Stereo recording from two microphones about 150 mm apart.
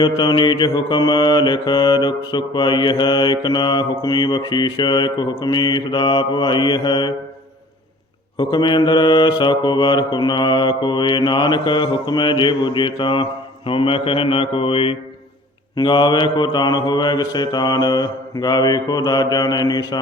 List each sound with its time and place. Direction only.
0.0 s mantra: 30° left (ahead or behind)
8.4 s mantra: 30° left (ahead or behind)